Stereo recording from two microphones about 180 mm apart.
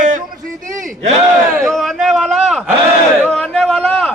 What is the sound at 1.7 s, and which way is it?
A man's voice, centre (ahead or behind).